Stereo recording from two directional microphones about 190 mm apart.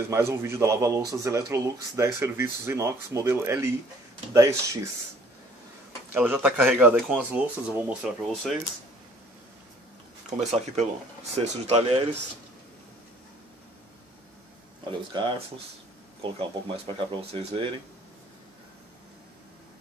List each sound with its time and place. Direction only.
0.1 s a man's voice: 15° right (ahead or behind)
6.1 s a man's voice: 10° right (ahead or behind)
10.4 s speech: 35° right (ahead or behind)
14.9 s speech: 25° right (ahead or behind)